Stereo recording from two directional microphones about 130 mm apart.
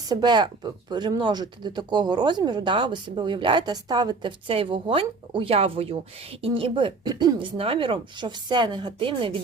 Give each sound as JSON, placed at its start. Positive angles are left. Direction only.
{"t": 0.1, "sound": "speech", "side_deg": -35}